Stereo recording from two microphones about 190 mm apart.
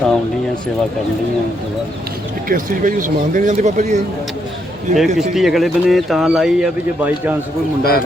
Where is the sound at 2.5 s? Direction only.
45° right (ahead or behind).